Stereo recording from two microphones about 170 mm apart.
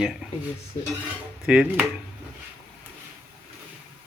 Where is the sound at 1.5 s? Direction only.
5° right (ahead or behind).